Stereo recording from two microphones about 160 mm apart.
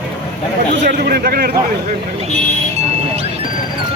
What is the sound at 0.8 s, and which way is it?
Speech, 75° right (ahead or behind).